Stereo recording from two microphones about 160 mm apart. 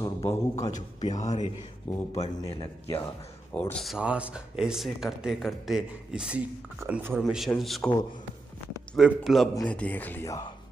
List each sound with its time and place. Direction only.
0.0 s a man's voice: 20° left (ahead or behind)
1.1 s a man's voice: 45° left (ahead or behind)
2.4 s speech: 15° left (ahead or behind)
3.5 s speech: 5° left (ahead or behind); by 7.2 s 15° right (ahead or behind)
7.2 s speech: centre (ahead or behind)
8.9 s speech: centre (ahead or behind)
9.7 s speech: 10° left (ahead or behind)